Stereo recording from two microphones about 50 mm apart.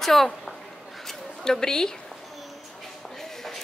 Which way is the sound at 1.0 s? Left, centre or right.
Centre.